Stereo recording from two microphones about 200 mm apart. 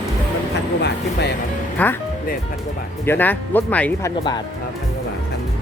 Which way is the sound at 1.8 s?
10° left (ahead or behind).